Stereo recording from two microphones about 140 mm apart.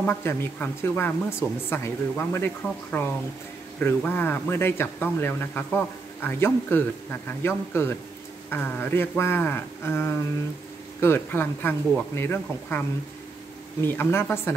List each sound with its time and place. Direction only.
0.0 s speech: 15° left (ahead or behind)